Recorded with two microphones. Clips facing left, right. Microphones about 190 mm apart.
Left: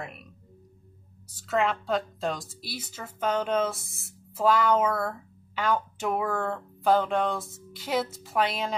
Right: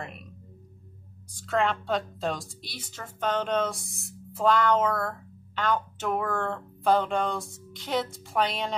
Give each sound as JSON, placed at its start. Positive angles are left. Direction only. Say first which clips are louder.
{"t": 1.3, "sound": "a woman's voice", "louder": "even", "side_deg": 0}